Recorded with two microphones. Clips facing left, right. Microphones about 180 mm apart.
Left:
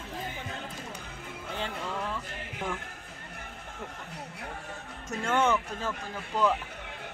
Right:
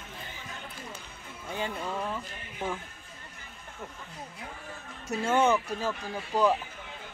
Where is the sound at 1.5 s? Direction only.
15° right (ahead or behind).